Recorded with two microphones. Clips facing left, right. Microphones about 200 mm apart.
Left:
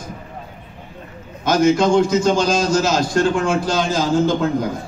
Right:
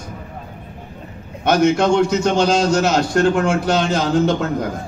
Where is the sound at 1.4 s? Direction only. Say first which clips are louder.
Even; 65° right (ahead or behind).